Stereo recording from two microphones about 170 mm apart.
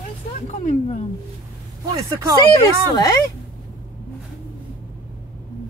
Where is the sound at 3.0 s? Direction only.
20° left (ahead or behind).